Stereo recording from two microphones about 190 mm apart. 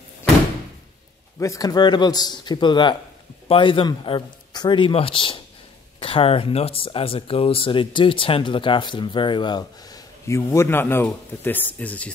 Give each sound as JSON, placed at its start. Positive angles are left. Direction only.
{"t": 1.4, "sound": "speech", "side_deg": 20}